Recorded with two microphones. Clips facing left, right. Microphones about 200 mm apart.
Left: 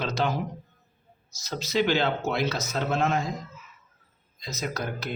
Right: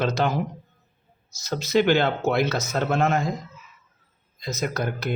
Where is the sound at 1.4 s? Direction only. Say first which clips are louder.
Right 5 dB; 55° right (ahead or behind).